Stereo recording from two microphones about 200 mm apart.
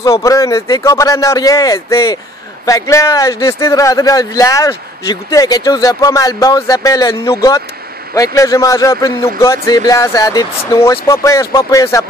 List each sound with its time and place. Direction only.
0.0 s speech: 15° left (ahead or behind)